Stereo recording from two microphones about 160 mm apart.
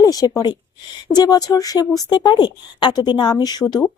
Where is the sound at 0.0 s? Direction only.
20° left (ahead or behind).